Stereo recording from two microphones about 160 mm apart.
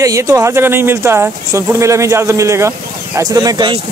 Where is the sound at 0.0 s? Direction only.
20° right (ahead or behind).